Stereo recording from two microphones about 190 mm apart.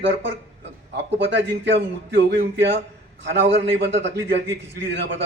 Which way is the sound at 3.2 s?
70° right (ahead or behind).